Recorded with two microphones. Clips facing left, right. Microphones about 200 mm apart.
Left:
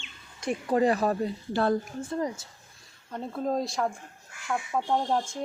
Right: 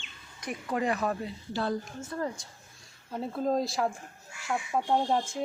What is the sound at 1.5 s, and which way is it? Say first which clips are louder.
Speech: left 5 dB; 55° left (ahead or behind).